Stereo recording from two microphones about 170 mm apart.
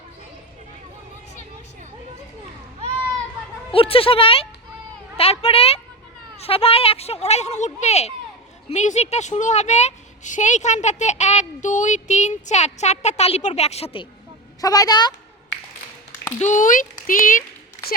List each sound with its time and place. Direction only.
3.7 s a woman's voice: 35° left (ahead or behind)
14.6 s a woman's voice: 20° left (ahead or behind)
16.4 s a woman's voice: 45° left (ahead or behind)